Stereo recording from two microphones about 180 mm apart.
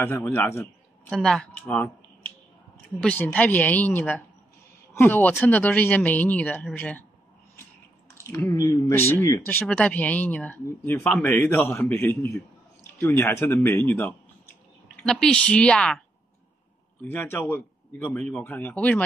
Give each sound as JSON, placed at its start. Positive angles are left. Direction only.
{"t": 0.0, "sound": "a man's voice", "side_deg": 10}
{"t": 8.3, "sound": "a woman's voice", "side_deg": 15}
{"t": 17.1, "sound": "a man's voice", "side_deg": 10}